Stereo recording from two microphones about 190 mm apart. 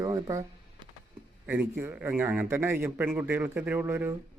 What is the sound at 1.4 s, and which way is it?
Speech, 10° right (ahead or behind).